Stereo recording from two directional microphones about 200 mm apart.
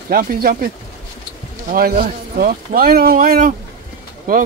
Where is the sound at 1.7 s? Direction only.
45° right (ahead or behind).